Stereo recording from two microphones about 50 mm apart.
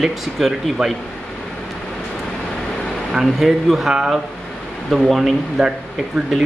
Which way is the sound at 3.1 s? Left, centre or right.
Centre.